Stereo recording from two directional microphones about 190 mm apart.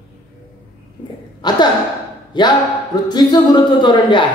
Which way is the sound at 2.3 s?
25° left (ahead or behind).